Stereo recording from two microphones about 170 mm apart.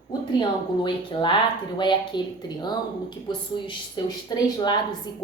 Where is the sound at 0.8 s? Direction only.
30° left (ahead or behind).